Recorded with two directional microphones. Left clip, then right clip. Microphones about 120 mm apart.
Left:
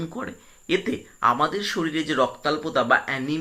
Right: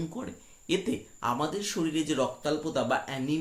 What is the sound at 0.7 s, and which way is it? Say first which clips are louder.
Speech: left 5 dB; 45° right (ahead or behind).